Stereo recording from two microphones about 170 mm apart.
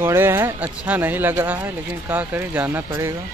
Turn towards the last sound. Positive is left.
turn(degrees=-15)  # may be behind; listen again after turning